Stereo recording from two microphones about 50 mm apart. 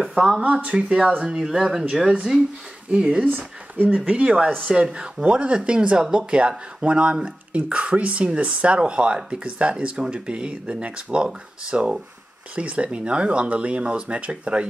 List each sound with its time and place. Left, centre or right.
0.1 s speech: centre
0.4 s speech: right
1.2 s speech: centre
3.3 s speech: right